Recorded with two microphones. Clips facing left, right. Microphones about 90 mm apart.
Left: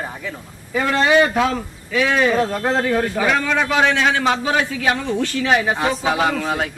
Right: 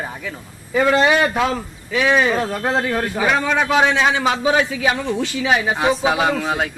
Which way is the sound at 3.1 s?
15° right (ahead or behind).